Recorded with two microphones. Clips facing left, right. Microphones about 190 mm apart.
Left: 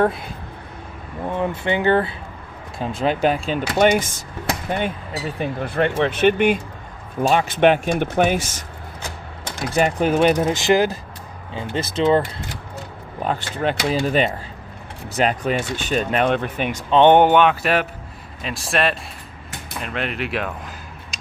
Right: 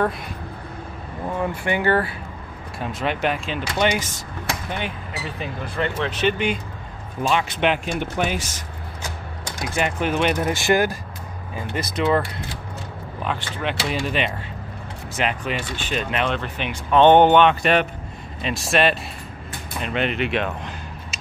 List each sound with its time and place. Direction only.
1.4 s speech: 20° left (ahead or behind)
2.8 s speech: 30° left (ahead or behind); by 4.2 s 50° left (ahead or behind)
5.4 s speech: 50° left (ahead or behind)
9.8 s speech: 40° left (ahead or behind)
10.3 s speech: 20° left (ahead or behind)
13.2 s speech: 40° left (ahead or behind)
16.9 s speech: 15° left (ahead or behind)